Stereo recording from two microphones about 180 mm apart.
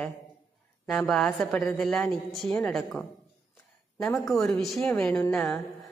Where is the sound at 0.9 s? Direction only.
5° left (ahead or behind).